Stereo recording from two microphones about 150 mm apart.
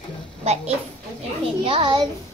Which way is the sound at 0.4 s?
45° right (ahead or behind).